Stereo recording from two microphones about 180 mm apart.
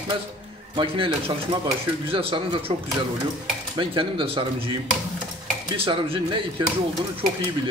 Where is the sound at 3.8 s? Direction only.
30° right (ahead or behind).